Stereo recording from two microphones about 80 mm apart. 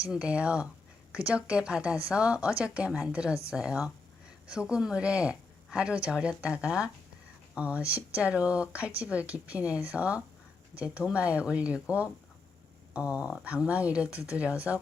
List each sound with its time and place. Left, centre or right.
0.0 s speech: centre